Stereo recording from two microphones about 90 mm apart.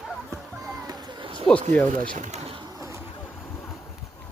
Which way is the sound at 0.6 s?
45° right (ahead or behind).